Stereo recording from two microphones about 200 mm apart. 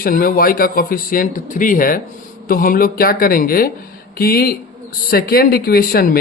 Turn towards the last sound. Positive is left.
turn(degrees=50)  # may be behind; listen again after turning